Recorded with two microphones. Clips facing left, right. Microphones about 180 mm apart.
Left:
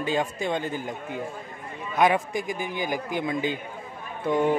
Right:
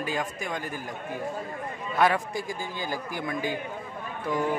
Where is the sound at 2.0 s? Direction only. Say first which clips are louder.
Left 2 dB; 20° left (ahead or behind).